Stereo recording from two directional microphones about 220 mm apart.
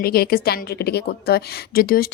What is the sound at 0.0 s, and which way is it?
A woman's voice, 45° left (ahead or behind).